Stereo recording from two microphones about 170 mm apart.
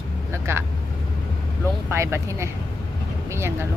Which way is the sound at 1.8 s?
15° right (ahead or behind).